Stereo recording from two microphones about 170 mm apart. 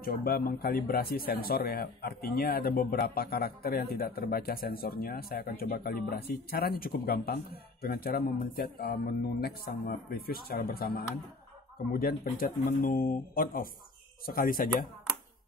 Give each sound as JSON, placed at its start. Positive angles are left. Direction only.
{"t": 0.0, "sound": "speech", "side_deg": 60}